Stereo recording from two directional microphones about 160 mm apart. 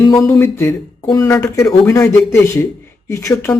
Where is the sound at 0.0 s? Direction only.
20° left (ahead or behind).